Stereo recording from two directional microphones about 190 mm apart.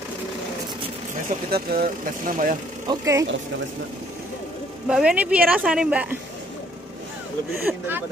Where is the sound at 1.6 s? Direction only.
50° right (ahead or behind).